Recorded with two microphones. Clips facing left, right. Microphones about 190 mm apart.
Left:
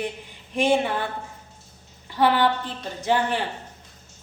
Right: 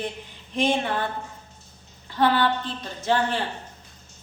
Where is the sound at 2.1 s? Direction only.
15° left (ahead or behind).